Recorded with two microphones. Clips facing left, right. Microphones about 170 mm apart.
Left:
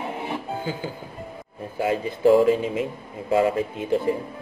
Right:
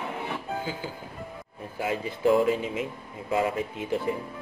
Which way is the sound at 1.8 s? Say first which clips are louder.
Left 6 dB; 30° left (ahead or behind).